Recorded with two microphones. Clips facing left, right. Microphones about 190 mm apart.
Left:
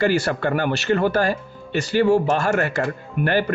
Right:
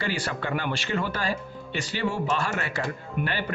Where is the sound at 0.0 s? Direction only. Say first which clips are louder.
Left 10 dB; 45° left (ahead or behind).